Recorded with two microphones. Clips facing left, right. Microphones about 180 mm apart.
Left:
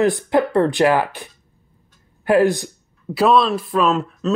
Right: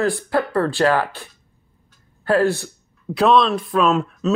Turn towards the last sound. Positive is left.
turn(degrees=0)  # may be behind; listen again after turning